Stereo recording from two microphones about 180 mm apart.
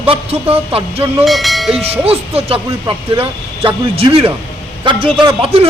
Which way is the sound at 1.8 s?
35° right (ahead or behind).